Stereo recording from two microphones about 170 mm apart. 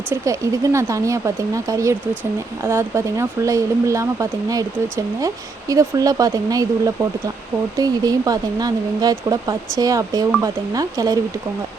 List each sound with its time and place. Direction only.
0.1 s speech: 20° right (ahead or behind)